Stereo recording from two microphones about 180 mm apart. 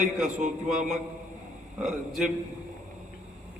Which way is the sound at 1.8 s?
5° right (ahead or behind).